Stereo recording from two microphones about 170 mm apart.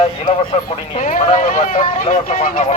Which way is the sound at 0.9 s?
50° left (ahead or behind).